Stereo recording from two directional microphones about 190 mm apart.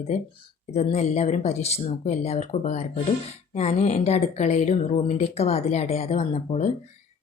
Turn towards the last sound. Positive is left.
turn(degrees=35)  # may be behind; listen again after turning